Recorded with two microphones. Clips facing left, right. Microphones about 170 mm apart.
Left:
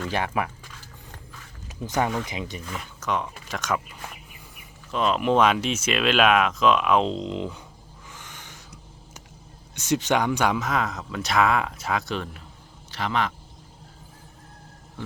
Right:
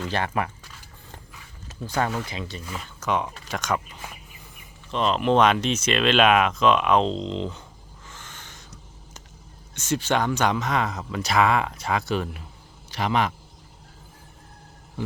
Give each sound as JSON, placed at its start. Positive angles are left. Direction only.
{"t": 0.1, "sound": "speech", "side_deg": 5}
{"t": 1.6, "sound": "a sound", "side_deg": 15}
{"t": 2.2, "sound": "speech", "side_deg": 15}
{"t": 2.6, "sound": "speech", "side_deg": 0}
{"t": 8.1, "sound": "owl", "side_deg": 10}
{"t": 9.7, "sound": "a man's voice", "side_deg": 15}
{"t": 15.0, "sound": "a sound", "side_deg": -15}